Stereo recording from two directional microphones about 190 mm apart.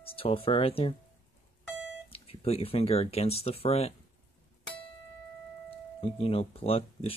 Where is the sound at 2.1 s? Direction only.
30° left (ahead or behind).